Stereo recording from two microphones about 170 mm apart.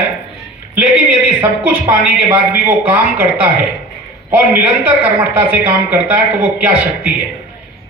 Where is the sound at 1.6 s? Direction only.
10° right (ahead or behind).